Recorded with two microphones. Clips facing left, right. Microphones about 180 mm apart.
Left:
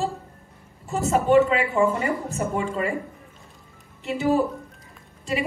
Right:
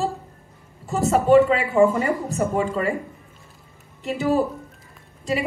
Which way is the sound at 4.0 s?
35° right (ahead or behind).